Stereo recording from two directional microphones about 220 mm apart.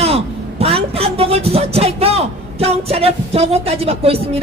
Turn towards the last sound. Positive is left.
turn(degrees=-25)  # may be behind; listen again after turning